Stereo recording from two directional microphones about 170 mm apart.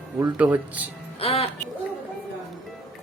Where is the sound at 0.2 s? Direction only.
10° right (ahead or behind).